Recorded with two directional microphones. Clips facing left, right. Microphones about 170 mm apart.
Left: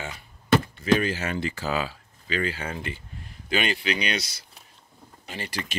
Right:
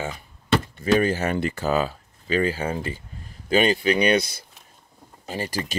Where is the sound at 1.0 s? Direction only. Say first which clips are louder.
Right 5 dB; 50° right (ahead or behind).